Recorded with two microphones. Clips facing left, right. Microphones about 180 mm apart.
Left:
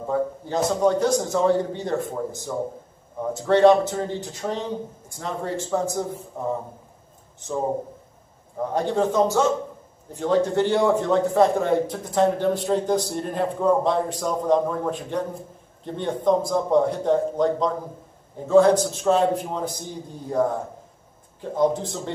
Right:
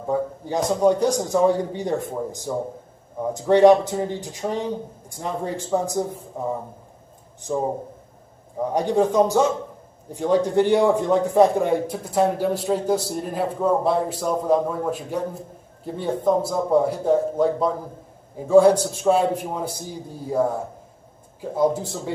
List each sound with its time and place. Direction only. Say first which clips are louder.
0.1 s a man's voice: right 1 dB; 15° right (ahead or behind)
8.5 s a man's voice: right 3 dB; 15° right (ahead or behind)